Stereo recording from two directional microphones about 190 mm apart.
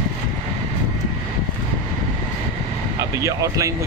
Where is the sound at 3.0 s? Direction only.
15° right (ahead or behind).